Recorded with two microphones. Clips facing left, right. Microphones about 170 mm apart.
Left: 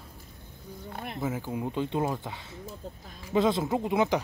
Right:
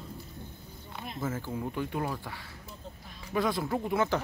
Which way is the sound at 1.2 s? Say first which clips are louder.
Left 2 dB; 15° left (ahead or behind).